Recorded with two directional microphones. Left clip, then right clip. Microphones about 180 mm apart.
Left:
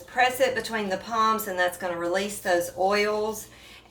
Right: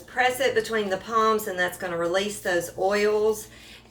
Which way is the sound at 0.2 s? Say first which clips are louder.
Even; 15° left (ahead or behind).